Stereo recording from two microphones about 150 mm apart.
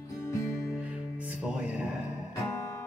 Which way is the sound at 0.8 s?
10° right (ahead or behind).